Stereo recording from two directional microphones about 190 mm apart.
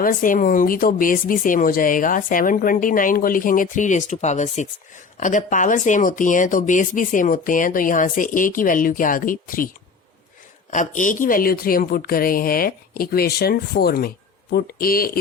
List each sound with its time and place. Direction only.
0.0 s speech: 45° left (ahead or behind)
10.7 s speech: 40° left (ahead or behind)